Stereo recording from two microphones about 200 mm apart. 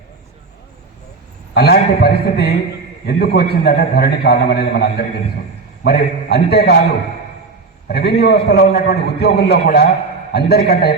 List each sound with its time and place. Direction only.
1.5 s a man's voice: 55° left (ahead or behind)
7.9 s a man's voice: 55° left (ahead or behind)